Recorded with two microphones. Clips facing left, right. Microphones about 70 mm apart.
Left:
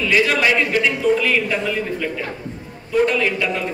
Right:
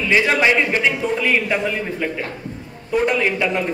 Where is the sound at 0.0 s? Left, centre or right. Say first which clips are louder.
Right 1 dB; right.